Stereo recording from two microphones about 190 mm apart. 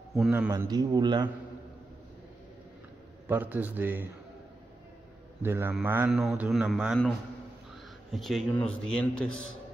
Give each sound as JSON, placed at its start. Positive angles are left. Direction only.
{"t": 0.3, "sound": "a man's voice", "side_deg": -10}
{"t": 3.3, "sound": "a man's voice", "side_deg": -10}
{"t": 5.4, "sound": "a man's voice", "side_deg": -10}